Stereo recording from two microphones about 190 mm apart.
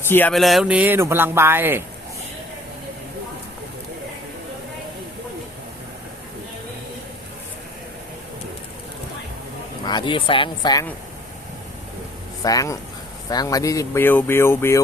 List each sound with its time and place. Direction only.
0.1 s speech: 5° left (ahead or behind); by 1.8 s 10° right (ahead or behind)
9.8 s speech: 25° left (ahead or behind)
12.4 s speech: 20° left (ahead or behind)